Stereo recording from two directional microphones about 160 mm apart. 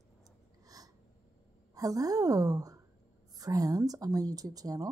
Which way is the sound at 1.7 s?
20° right (ahead or behind).